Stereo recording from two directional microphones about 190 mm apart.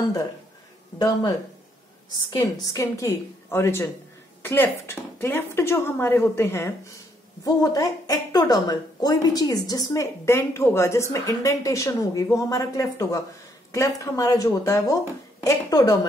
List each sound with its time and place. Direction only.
0.9 s a woman's voice: 20° left (ahead or behind)
2.3 s a woman's voice: 20° left (ahead or behind)